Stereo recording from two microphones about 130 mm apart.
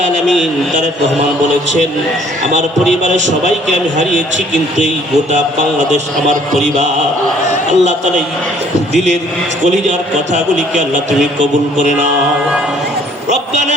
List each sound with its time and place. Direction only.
3.0 s a man's voice: 65° right (ahead or behind)
7.7 s a man's voice: 65° right (ahead or behind)
13.3 s a man's voice: 65° right (ahead or behind)